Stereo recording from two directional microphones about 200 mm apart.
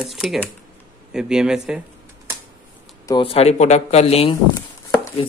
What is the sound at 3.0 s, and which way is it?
A man's voice, 25° left (ahead or behind).